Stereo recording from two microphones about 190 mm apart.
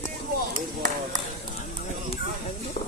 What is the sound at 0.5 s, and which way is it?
Speech, 45° right (ahead or behind).